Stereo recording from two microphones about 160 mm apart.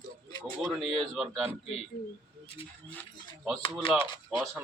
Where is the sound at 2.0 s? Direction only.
65° left (ahead or behind).